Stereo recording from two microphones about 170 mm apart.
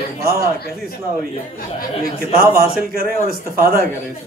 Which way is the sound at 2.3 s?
60° right (ahead or behind).